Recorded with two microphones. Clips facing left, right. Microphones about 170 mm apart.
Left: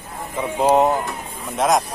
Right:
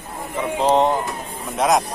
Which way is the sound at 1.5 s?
Centre (ahead or behind).